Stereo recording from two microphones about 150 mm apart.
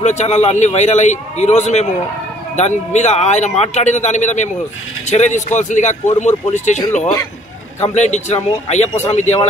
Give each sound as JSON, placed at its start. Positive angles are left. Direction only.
{"t": 0.0, "sound": "speech", "side_deg": 50}
{"t": 7.8, "sound": "speech", "side_deg": 50}